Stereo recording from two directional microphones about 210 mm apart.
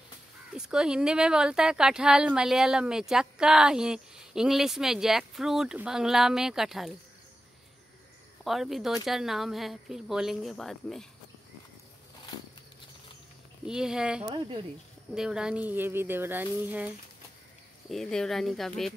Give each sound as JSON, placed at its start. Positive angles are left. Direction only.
{"t": 0.6, "sound": "a woman's voice", "side_deg": -5}
{"t": 8.5, "sound": "a woman's voice", "side_deg": 0}
{"t": 13.7, "sound": "a woman's voice", "side_deg": -5}
{"t": 14.2, "sound": "speech", "side_deg": -20}
{"t": 15.1, "sound": "a woman's voice", "side_deg": -5}